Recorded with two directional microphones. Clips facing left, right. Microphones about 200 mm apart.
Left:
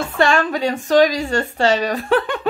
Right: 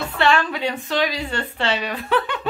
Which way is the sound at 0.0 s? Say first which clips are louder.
Left 3 dB; 45° left (ahead or behind).